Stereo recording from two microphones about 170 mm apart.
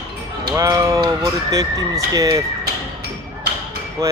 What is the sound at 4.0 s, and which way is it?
Speech, 20° right (ahead or behind).